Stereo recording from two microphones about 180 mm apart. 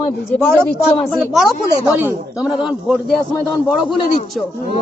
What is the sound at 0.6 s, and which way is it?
A man's voice, centre (ahead or behind).